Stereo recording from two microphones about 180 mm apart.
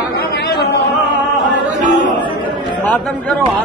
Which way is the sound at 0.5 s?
65° left (ahead or behind).